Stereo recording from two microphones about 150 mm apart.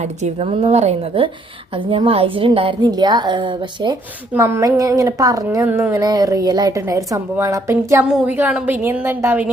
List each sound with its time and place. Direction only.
0.0 s a woman's voice: 45° right (ahead or behind); by 3.9 s 30° right (ahead or behind)
4.4 s a woman's voice: 15° right (ahead or behind)